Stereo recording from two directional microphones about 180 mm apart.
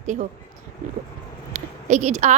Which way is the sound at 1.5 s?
40° right (ahead or behind).